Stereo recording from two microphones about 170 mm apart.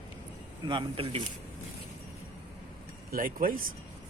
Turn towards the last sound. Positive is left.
turn(degrees=-55)  # may be behind; listen again after turning